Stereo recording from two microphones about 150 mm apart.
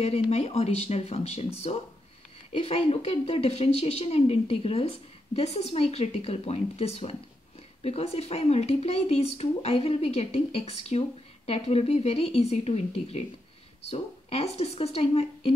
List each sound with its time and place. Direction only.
0.0 s speech: 45° left (ahead or behind)